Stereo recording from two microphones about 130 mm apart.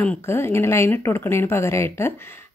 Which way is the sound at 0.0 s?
20° left (ahead or behind).